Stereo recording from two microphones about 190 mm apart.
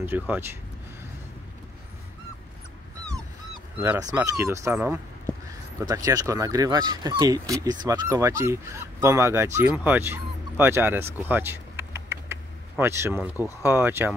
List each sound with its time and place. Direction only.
0.0 s speech: 10° right (ahead or behind)
3.8 s speech: 10° right (ahead or behind)